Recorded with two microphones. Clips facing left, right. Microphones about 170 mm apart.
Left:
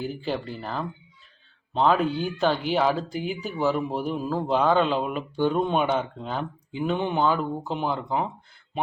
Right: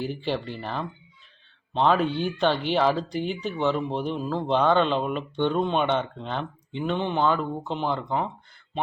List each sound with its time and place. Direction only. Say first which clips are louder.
0.0 s speech: right 1 dB; centre (ahead or behind)